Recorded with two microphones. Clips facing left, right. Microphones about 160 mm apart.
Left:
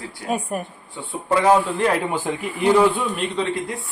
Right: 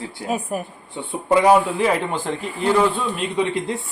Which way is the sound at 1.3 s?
15° right (ahead or behind).